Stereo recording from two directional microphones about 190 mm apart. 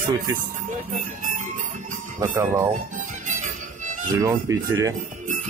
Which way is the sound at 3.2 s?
40° right (ahead or behind).